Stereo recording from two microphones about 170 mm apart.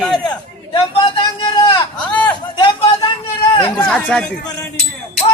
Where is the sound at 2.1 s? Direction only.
10° left (ahead or behind).